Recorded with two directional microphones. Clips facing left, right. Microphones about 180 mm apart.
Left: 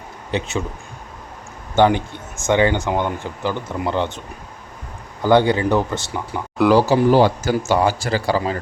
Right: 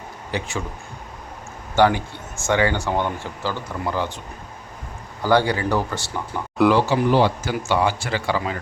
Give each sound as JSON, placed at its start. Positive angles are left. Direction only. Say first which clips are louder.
{"t": 0.3, "sound": "speech", "louder": "left 4 dB", "side_deg": 20}
{"t": 1.7, "sound": "speech", "louder": "left 2 dB", "side_deg": 20}
{"t": 5.2, "sound": "speech", "louder": "left 4 dB", "side_deg": 20}
{"t": 6.7, "sound": "speech", "louder": "left 4 dB", "side_deg": 40}